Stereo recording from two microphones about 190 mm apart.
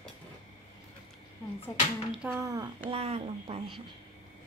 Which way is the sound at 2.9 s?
30° right (ahead or behind).